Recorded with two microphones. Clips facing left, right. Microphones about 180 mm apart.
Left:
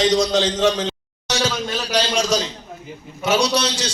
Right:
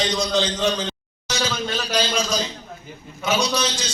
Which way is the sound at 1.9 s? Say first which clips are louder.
Left 4 dB; 80° left.